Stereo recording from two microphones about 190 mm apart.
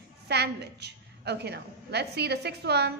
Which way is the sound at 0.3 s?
60° right (ahead or behind).